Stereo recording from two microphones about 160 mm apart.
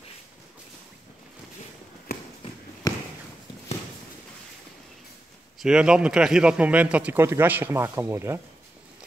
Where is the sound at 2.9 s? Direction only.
20° left (ahead or behind).